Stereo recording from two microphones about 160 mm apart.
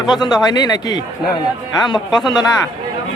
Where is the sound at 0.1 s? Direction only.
25° left (ahead or behind).